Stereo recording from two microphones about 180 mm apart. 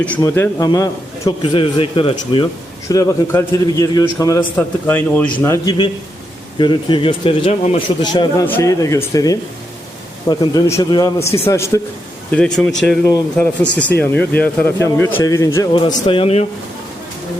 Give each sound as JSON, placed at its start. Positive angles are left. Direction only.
{"t": 0.2, "sound": "a man's voice", "side_deg": 20}
{"t": 4.5, "sound": "speech", "side_deg": 10}
{"t": 6.6, "sound": "speech", "side_deg": 25}
{"t": 8.0, "sound": "a man's voice", "side_deg": 25}
{"t": 12.3, "sound": "speech", "side_deg": 5}